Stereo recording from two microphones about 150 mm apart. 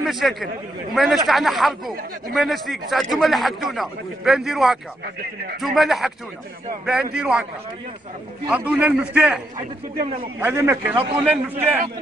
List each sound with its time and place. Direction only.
0.0 s a man's voice: centre (ahead or behind)
8.5 s a man's voice: 10° right (ahead or behind)
10.4 s a man's voice: 20° right (ahead or behind)